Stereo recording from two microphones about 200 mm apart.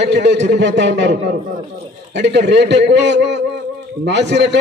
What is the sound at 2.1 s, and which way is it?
A man's voice, 60° right (ahead or behind).